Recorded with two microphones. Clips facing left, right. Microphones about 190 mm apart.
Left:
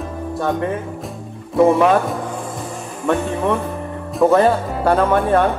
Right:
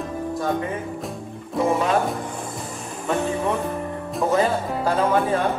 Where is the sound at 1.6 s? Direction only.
60° left (ahead or behind).